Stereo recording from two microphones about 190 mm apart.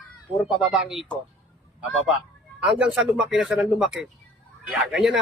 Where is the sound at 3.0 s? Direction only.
Centre (ahead or behind).